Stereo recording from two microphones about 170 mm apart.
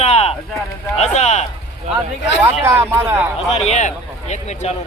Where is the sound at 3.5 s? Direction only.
40° left (ahead or behind).